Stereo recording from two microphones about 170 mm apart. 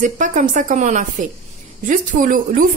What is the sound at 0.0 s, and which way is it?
Speech, 50° right (ahead or behind).